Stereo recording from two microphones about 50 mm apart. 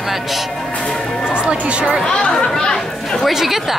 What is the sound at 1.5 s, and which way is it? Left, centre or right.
Speech, right.